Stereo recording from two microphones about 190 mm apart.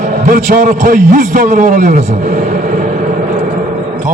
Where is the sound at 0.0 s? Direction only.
45° right (ahead or behind).